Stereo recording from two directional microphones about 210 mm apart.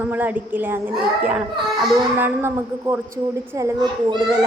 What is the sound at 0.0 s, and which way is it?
A woman's voice, 10° right (ahead or behind).